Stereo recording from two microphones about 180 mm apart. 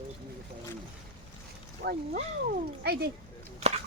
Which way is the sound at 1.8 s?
55° right (ahead or behind).